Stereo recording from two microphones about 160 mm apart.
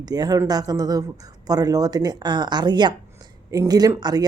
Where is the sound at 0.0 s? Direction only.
25° right (ahead or behind).